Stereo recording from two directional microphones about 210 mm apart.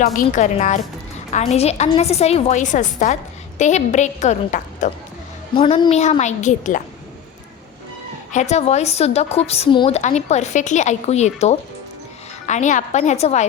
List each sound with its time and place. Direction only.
0.0 s a woman's voice: 35° left (ahead or behind)
8.3 s a woman's voice: 35° left (ahead or behind)